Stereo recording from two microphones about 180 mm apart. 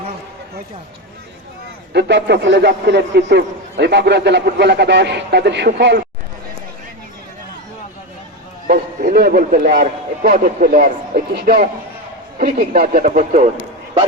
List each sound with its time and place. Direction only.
1.9 s a man's voice: 70° right (ahead or behind)
8.6 s a man's voice: 50° right (ahead or behind)